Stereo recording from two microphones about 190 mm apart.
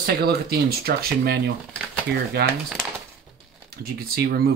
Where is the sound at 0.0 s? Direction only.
55° right (ahead or behind).